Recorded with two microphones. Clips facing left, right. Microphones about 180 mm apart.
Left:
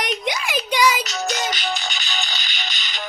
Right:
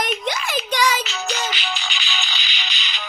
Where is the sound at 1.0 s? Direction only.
45° left (ahead or behind).